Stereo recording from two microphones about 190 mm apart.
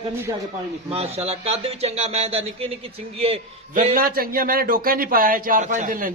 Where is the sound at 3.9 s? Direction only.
50° right (ahead or behind).